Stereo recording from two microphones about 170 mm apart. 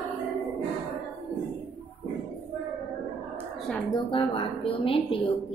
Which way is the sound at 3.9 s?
30° left (ahead or behind).